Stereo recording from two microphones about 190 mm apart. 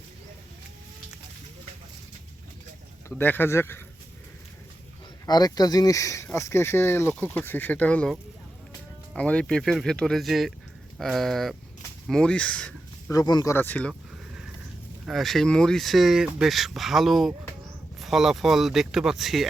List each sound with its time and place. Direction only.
3.2 s speech: 10° left (ahead or behind)
5.2 s speech: 20° left (ahead or behind)
13.1 s speech: 20° left (ahead or behind)
15.0 s speech: centre (ahead or behind)